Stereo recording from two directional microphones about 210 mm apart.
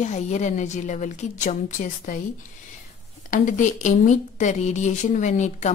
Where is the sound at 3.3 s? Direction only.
35° left (ahead or behind).